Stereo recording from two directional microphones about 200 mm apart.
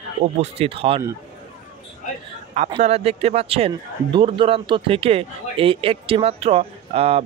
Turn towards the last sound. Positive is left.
turn(degrees=-30)  # may be behind; listen again after turning